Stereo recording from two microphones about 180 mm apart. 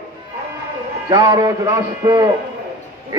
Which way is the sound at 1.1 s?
25° right (ahead or behind).